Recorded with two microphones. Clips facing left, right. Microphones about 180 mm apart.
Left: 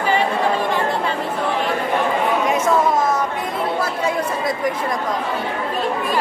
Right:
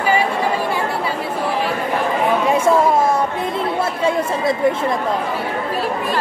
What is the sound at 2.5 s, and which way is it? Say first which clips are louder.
Chatter: right 4 dB; 30° right (ahead or behind).